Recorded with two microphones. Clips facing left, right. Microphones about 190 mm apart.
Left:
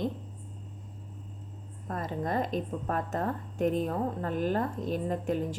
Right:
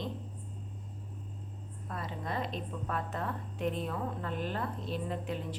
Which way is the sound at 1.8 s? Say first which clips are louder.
Left 6 dB; 45° left (ahead or behind).